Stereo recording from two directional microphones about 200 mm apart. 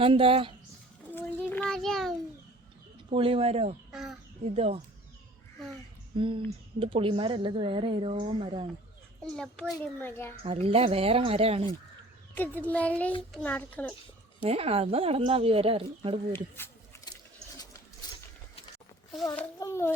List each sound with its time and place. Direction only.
0.0 s a woman's voice: 25° right (ahead or behind)
1.1 s a sound: 5° left (ahead or behind)
3.1 s a woman's voice: 30° right (ahead or behind)
3.9 s crow: centre (ahead or behind)
4.5 s speech: 30° right (ahead or behind)
6.1 s a woman's voice: 25° right (ahead or behind)
9.2 s a child's voice: 5° left (ahead or behind)
10.4 s a woman's voice: 30° right (ahead or behind)
12.3 s speech: 10° left (ahead or behind)
14.4 s a woman's voice: 30° right (ahead or behind)
19.4 s speech: 15° left (ahead or behind)